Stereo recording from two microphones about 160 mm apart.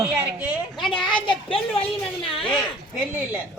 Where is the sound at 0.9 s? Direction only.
30° left (ahead or behind).